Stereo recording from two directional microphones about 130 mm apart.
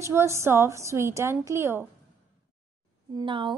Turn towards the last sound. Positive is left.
turn(degrees=-40)  # may be behind; listen again after turning